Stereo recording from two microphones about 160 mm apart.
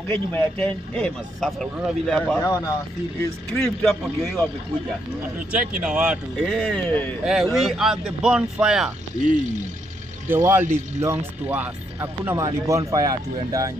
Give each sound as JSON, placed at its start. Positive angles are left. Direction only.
{"t": 0.1, "sound": "speech", "side_deg": 10}
{"t": 3.6, "sound": "speech", "side_deg": 0}
{"t": 5.5, "sound": "speech", "side_deg": -5}
{"t": 6.4, "sound": "speech", "side_deg": 5}
{"t": 7.2, "sound": "speech", "side_deg": 0}
{"t": 10.2, "sound": "speech", "side_deg": -15}